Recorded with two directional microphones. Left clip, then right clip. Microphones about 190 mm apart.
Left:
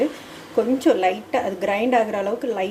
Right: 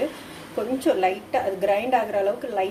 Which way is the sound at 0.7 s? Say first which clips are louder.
Even; 35° left (ahead or behind).